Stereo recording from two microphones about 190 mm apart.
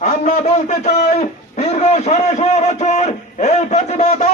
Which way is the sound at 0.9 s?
40° left (ahead or behind).